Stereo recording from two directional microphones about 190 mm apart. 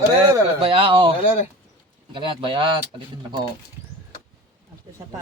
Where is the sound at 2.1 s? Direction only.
25° right (ahead or behind).